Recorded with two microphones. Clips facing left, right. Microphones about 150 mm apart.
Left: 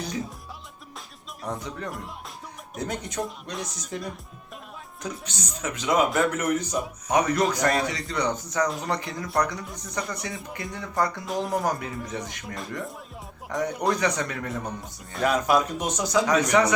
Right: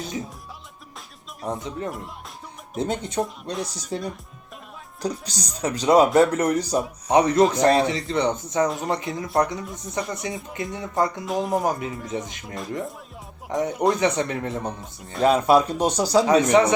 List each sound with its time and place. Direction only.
1.5 s speech: 25° right (ahead or behind)
5.0 s speech: 35° right (ahead or behind)